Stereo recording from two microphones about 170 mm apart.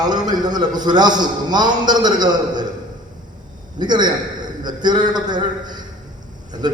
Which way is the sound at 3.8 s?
25° right (ahead or behind).